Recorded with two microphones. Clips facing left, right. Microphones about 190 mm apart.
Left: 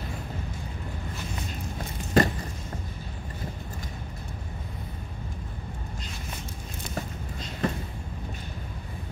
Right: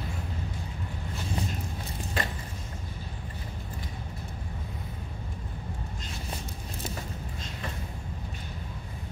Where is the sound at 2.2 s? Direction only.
40° left (ahead or behind).